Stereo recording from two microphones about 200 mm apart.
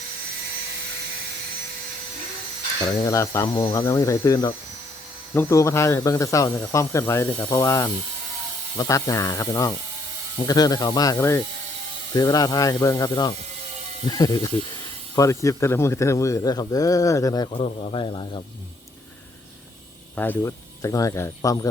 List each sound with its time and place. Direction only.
3.0 s speech: 15° left (ahead or behind)
17.6 s speech: 30° left (ahead or behind)
20.1 s speech: 10° left (ahead or behind)